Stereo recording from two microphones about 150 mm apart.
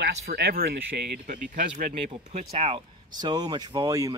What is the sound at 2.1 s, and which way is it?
Speech, 45° right (ahead or behind).